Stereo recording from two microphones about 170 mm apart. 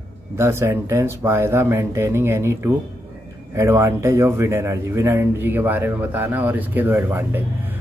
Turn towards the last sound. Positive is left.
turn(degrees=-10)  # may be behind; listen again after turning